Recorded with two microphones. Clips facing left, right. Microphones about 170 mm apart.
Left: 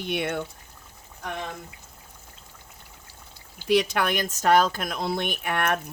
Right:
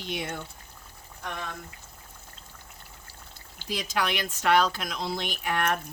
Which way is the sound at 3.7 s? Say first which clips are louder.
Left 7 dB; 65° left (ahead or behind).